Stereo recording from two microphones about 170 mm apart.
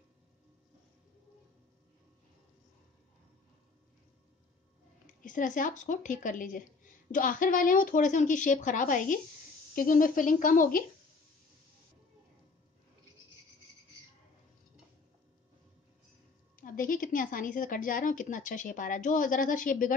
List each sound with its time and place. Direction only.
5.0 s speech: 50° left (ahead or behind)
16.5 s speech: 55° left (ahead or behind)